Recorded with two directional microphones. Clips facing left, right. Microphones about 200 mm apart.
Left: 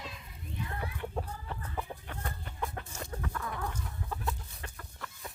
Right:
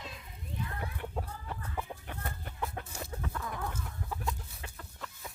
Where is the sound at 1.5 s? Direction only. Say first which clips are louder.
Even; 10° right (ahead or behind).